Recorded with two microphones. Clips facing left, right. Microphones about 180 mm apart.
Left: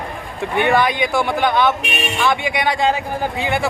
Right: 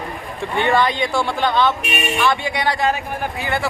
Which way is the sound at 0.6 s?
10° left (ahead or behind).